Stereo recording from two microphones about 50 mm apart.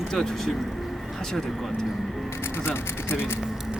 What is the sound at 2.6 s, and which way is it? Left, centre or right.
Speech, left.